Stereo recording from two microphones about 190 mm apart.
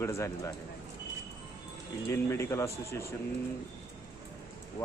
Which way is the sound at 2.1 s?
15° left (ahead or behind).